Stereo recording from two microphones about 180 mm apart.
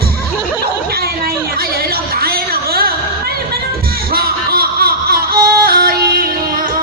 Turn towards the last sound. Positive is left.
turn(degrees=-55)  # may be behind; listen again after turning